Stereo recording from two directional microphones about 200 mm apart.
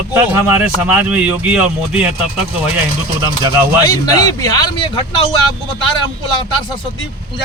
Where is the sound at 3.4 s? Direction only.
20° right (ahead or behind).